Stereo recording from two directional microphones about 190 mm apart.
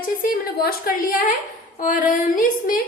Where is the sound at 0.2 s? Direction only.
50° left (ahead or behind).